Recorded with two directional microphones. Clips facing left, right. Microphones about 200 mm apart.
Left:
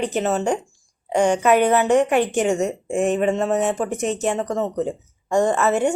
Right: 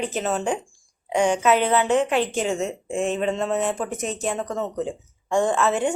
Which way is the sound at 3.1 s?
15° left (ahead or behind).